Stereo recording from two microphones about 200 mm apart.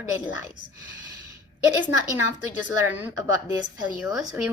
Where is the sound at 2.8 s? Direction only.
10° right (ahead or behind).